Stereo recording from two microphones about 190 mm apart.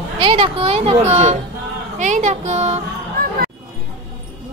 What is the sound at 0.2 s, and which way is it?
A woman's voice, 30° right (ahead or behind).